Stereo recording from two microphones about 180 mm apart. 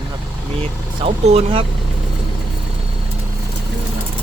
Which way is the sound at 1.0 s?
35° right (ahead or behind).